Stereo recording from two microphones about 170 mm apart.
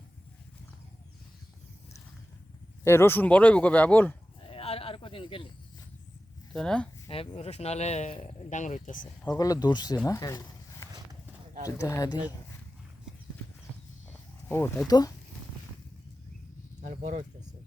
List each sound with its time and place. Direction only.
2.8 s speech: 15° left (ahead or behind)
4.4 s a sound: 35° left (ahead or behind)
6.5 s speech: 5° left (ahead or behind)
7.1 s speech: 35° left (ahead or behind)
9.4 s speech: 25° left (ahead or behind)
10.1 s a sound: 20° left (ahead or behind)
11.6 s speech: 15° left (ahead or behind)
14.1 s a sound: 15° left (ahead or behind)
14.8 s speech: 20° left (ahead or behind)
16.9 s speech: 45° right (ahead or behind)